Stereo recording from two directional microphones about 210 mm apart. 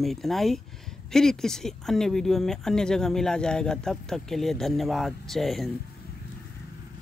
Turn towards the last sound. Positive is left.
turn(degrees=0)  # may be behind; listen again after turning